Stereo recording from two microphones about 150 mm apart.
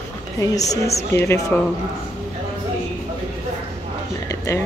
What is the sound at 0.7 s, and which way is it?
Speech, 45° left (ahead or behind).